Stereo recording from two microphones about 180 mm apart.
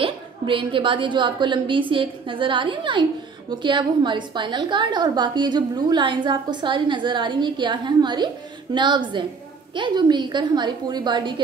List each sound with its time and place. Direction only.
0.0 s a woman's voice: 30° right (ahead or behind)